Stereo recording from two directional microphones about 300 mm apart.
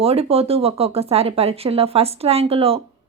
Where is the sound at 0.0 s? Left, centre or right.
Centre.